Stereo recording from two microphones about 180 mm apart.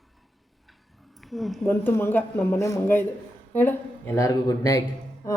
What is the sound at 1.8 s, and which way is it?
Speech, 10° left (ahead or behind).